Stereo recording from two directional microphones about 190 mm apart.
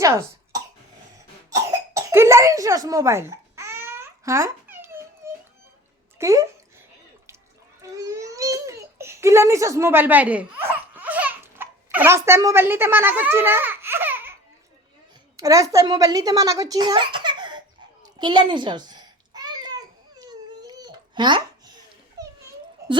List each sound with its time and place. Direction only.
0.0 s cough: 15° right (ahead or behind)
6.1 s speech: 15° right (ahead or behind)
7.8 s babbling: 15° right (ahead or behind)
15.4 s a child's voice: 15° right (ahead or behind)
18.0 s babbling: 25° right (ahead or behind)
22.2 s a sound: 20° right (ahead or behind)